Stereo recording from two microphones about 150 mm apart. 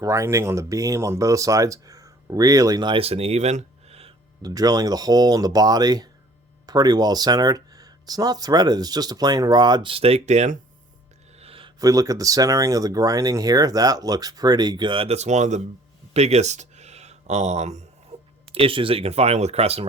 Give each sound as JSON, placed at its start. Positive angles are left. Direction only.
{"t": 0.0, "sound": "speech", "side_deg": -20}
{"t": 4.4, "sound": "speech", "side_deg": -25}
{"t": 11.3, "sound": "a sound", "side_deg": -40}
{"t": 11.8, "sound": "speech", "side_deg": -25}